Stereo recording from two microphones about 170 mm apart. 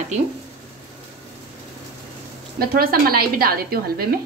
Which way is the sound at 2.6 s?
60° right (ahead or behind).